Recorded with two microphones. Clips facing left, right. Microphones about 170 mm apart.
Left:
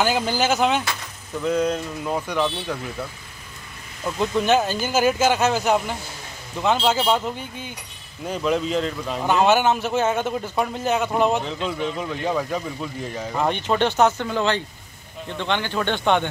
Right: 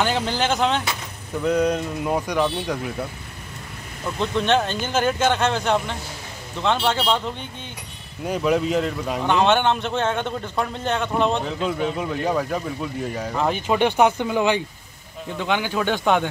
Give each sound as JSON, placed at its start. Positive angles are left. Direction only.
{"t": 0.0, "sound": "a man's voice", "side_deg": 5}
{"t": 1.6, "sound": "speech", "side_deg": -10}
{"t": 4.2, "sound": "a man's voice", "side_deg": 5}
{"t": 8.2, "sound": "speech", "side_deg": -5}
{"t": 9.2, "sound": "a man's voice", "side_deg": 5}
{"t": 11.4, "sound": "a man's voice", "side_deg": -5}